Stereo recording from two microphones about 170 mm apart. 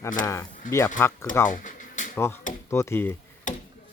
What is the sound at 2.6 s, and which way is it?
Speech, 15° left (ahead or behind).